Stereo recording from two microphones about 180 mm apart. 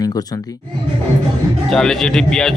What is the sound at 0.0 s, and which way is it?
Speech, 20° left (ahead or behind).